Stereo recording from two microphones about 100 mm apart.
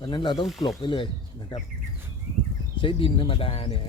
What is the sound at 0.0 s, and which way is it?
Speech, 50° left (ahead or behind).